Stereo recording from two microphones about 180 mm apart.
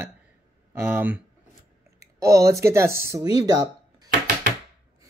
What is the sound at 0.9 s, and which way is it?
Speech, 10° right (ahead or behind).